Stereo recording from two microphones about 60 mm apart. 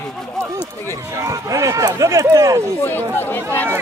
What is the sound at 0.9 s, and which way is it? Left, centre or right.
Speech, right.